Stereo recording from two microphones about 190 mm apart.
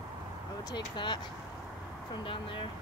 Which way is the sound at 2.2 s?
25° left (ahead or behind).